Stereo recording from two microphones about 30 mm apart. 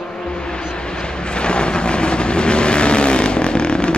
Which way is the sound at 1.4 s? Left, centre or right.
Left.